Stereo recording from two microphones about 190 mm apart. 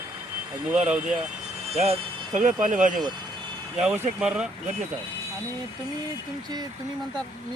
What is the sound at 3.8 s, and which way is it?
Speech, 5° right (ahead or behind).